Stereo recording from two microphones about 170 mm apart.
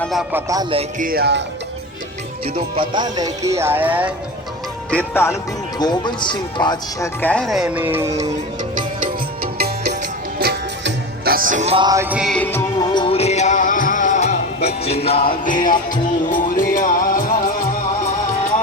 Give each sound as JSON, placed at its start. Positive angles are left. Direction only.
{"t": 0.0, "sound": "speech", "side_deg": 0}
{"t": 0.3, "sound": "music", "side_deg": -20}
{"t": 0.9, "sound": "speech", "side_deg": -60}
{"t": 2.6, "sound": "music", "side_deg": -30}
{"t": 4.9, "sound": "speech", "side_deg": 10}
{"t": 5.8, "sound": "speech", "side_deg": 25}
{"t": 7.2, "sound": "speech", "side_deg": 5}
{"t": 8.7, "sound": "music", "side_deg": -60}
{"t": 11.9, "sound": "speech", "side_deg": -15}
{"t": 12.3, "sound": "speech", "side_deg": 10}
{"t": 12.9, "sound": "music", "side_deg": 30}
{"t": 15.4, "sound": "music", "side_deg": 50}